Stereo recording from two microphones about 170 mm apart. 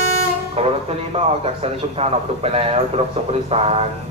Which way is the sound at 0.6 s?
35° right (ahead or behind).